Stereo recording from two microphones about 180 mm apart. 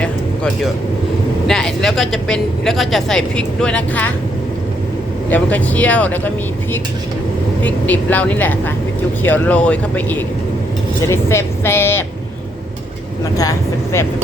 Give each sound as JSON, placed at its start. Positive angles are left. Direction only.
{"t": 0.0, "sound": "a sound", "side_deg": 0}
{"t": 1.5, "sound": "speech", "side_deg": 5}
{"t": 5.3, "sound": "a woman's voice", "side_deg": 10}
{"t": 7.6, "sound": "a woman's voice", "side_deg": 10}
{"t": 13.3, "sound": "speech", "side_deg": 20}